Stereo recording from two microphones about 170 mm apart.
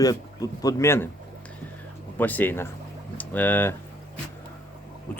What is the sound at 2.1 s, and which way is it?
Speech, 10° left (ahead or behind).